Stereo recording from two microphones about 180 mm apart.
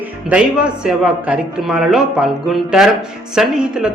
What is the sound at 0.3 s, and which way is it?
A man's voice, 5° right (ahead or behind).